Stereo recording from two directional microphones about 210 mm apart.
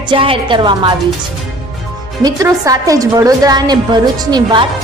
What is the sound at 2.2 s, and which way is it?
A woman's voice, 15° right (ahead or behind).